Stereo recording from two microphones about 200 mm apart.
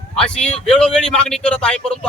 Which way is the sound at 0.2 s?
5° left (ahead or behind).